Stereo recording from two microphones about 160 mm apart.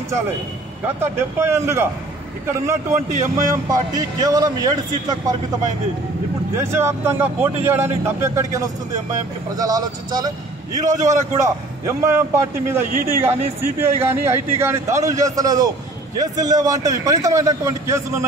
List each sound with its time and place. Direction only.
1.0 s a man's voice: 15° right (ahead or behind)
6.5 s a man's voice: 15° right (ahead or behind)
11.3 s a man's voice: 20° right (ahead or behind)